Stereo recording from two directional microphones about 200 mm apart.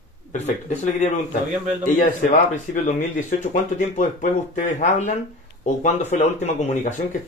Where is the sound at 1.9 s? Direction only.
40° left (ahead or behind).